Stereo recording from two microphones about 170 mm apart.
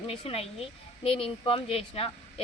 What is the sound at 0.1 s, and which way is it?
Speech, 35° left (ahead or behind).